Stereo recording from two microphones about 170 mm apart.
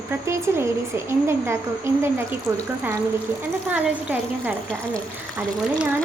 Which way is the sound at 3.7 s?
10° right (ahead or behind).